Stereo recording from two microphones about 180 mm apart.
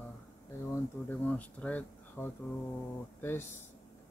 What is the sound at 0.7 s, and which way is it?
Speech, 10° left (ahead or behind).